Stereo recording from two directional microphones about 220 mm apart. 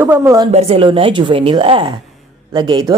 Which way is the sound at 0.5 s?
30° right (ahead or behind).